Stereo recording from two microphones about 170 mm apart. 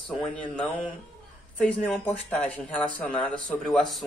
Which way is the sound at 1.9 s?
5° left (ahead or behind).